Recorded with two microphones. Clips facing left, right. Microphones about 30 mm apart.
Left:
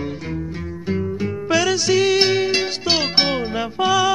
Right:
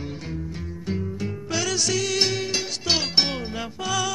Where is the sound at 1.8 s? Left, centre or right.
Left.